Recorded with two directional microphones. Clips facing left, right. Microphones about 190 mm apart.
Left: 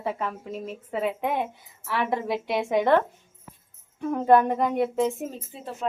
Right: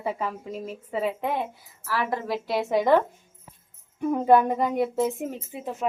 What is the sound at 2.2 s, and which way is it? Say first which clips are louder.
Speech: left 1 dB; 20° left (ahead or behind).